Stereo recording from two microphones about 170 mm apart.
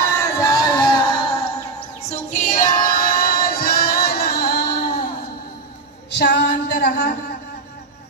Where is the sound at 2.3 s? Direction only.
45° left (ahead or behind); by 4.8 s 70° left (ahead or behind).